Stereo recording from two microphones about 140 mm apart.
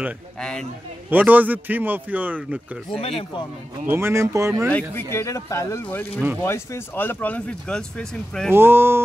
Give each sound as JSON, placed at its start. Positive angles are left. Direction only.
{"t": 0.4, "sound": "speech", "side_deg": 5}
{"t": 1.1, "sound": "a man's voice", "side_deg": -10}
{"t": 3.0, "sound": "speech", "side_deg": 45}
{"t": 3.8, "sound": "speech", "side_deg": -15}
{"t": 4.6, "sound": "speech", "side_deg": 10}
{"t": 5.1, "sound": "speech", "side_deg": 20}
{"t": 8.5, "sound": "a man's voice", "side_deg": -15}